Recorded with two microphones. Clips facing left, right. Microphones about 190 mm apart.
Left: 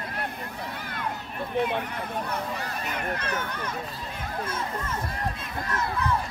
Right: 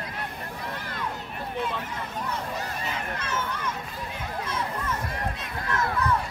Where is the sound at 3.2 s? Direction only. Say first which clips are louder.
Even; 60° left (ahead or behind).